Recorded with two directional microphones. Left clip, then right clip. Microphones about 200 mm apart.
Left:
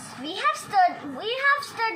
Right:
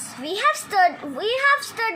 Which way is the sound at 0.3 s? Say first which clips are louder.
Right 4 dB; 55° right (ahead or behind).